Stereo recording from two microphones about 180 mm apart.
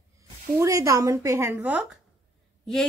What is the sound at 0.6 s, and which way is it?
A woman's voice, 20° right (ahead or behind).